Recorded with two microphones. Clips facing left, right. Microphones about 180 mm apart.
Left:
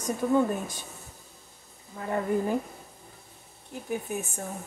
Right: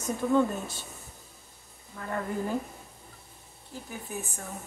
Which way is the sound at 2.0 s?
20° left (ahead or behind).